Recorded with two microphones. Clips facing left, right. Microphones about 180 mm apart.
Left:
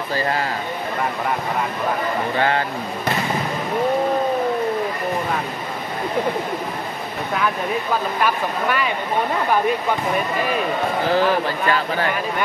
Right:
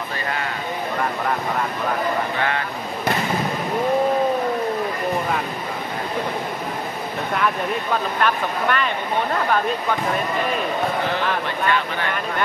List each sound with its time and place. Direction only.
0.1 s speech: 35° left (ahead or behind)
2.3 s speech: 30° left (ahead or behind)
8.2 s speech: 5° left (ahead or behind)
11.1 s speech: 35° left (ahead or behind)